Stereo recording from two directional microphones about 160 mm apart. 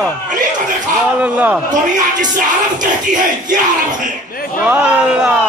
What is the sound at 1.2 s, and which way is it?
Speech, 10° right (ahead or behind).